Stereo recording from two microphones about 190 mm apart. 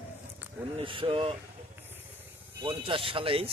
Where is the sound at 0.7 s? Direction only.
25° right (ahead or behind).